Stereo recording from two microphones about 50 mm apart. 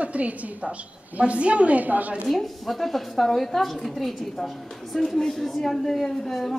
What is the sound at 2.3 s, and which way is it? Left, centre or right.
A woman's voice, centre.